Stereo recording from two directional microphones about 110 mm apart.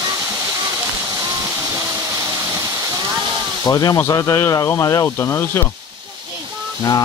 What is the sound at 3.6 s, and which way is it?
Speech, 35° left (ahead or behind).